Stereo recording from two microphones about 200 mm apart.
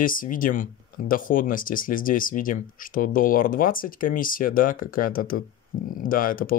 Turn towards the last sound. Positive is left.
turn(degrees=45)  # may be behind; listen again after turning